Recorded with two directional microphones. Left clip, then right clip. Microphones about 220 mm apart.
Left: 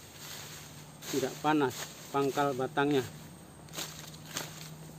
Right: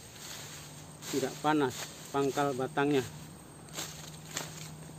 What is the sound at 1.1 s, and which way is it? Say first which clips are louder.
Speech: even; 5° left (ahead or behind).